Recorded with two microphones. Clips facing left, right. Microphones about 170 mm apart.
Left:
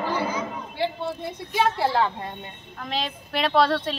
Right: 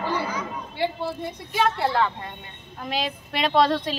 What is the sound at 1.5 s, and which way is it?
Speech, 5° left (ahead or behind).